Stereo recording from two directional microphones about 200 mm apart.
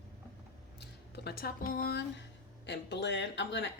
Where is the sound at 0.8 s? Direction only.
55° left (ahead or behind).